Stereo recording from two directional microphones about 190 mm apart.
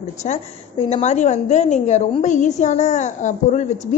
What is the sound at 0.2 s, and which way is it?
A woman's voice, 35° left (ahead or behind).